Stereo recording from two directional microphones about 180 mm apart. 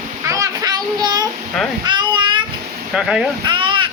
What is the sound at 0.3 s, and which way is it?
Child singing, 20° right (ahead or behind).